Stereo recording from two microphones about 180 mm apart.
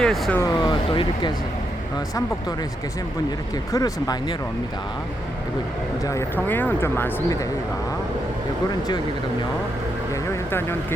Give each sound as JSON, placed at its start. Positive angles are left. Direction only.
{"t": 0.0, "sound": "speech", "side_deg": 5}
{"t": 0.4, "sound": "speech", "side_deg": 25}
{"t": 3.7, "sound": "speech", "side_deg": 20}
{"t": 6.1, "sound": "speech", "side_deg": 15}
{"t": 10.2, "sound": "vehicle", "side_deg": 15}